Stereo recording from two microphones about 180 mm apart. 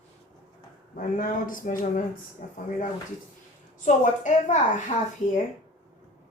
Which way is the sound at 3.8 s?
45° left (ahead or behind).